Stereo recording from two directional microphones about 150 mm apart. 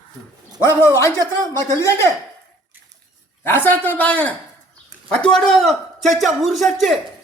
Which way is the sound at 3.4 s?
15° left (ahead or behind).